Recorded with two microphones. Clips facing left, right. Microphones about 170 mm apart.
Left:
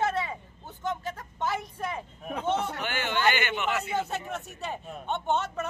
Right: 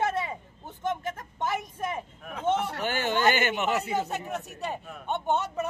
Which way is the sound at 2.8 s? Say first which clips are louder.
Right 2 dB; 40° right (ahead or behind).